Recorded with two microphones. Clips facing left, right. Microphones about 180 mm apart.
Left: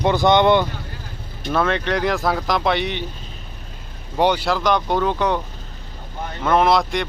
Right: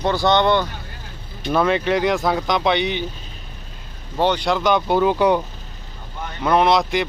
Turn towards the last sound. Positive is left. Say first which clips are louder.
# even
turn(degrees=0)  # may be behind; listen again after turning